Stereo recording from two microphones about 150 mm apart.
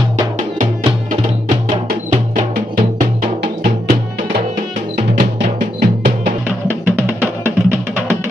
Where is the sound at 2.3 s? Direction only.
70° right (ahead or behind).